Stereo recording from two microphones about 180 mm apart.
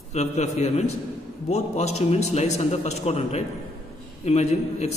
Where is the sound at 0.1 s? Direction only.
40° left (ahead or behind).